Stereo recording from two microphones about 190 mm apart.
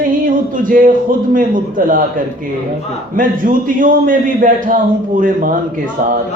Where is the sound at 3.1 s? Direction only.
45° right (ahead or behind).